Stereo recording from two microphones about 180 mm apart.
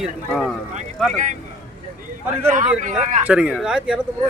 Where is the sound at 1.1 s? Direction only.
45° right (ahead or behind).